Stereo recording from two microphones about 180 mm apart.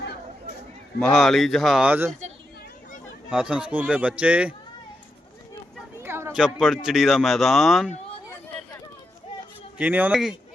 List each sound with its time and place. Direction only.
0.9 s speech: centre (ahead or behind)
3.2 s a man's voice: 5° right (ahead or behind)
6.0 s a sound: 15° right (ahead or behind)
6.4 s speech: centre (ahead or behind)
9.7 s a man's voice: 10° right (ahead or behind)